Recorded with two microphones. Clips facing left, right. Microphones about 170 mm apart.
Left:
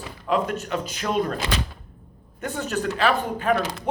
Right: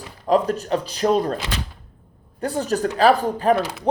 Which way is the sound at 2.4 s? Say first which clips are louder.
Right 5 dB; 35° right (ahead or behind).